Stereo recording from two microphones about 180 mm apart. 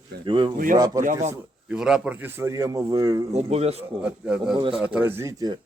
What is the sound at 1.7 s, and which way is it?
Speech, 5° right (ahead or behind).